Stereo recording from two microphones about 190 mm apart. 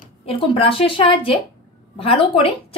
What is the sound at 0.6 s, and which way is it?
A woman's voice, 30° left (ahead or behind).